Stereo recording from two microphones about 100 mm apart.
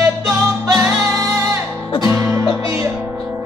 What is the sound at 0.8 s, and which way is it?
Music, 25° right (ahead or behind).